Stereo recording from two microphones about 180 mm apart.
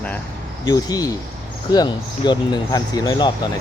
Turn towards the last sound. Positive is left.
turn(degrees=20)  # may be behind; listen again after turning